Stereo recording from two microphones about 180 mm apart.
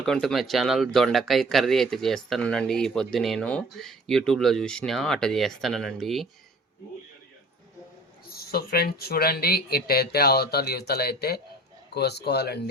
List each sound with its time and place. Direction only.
0.0 s speech: 5° left (ahead or behind)
8.3 s speech: 60° left (ahead or behind)